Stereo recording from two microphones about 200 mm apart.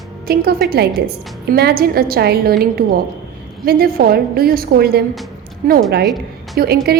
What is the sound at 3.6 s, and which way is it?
A woman's voice, 50° right (ahead or behind).